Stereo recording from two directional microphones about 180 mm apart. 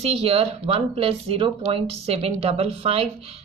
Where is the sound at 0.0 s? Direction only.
35° right (ahead or behind).